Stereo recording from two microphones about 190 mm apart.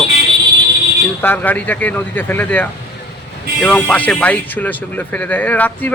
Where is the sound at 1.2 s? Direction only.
10° left (ahead or behind).